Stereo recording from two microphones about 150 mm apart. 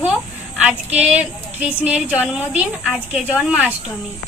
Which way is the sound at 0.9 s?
10° right (ahead or behind).